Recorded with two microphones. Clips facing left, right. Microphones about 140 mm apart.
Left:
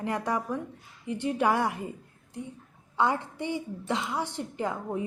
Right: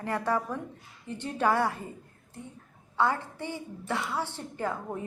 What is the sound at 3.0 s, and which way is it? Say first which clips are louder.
A woman's voice: left 1 dB; 15° left (ahead or behind).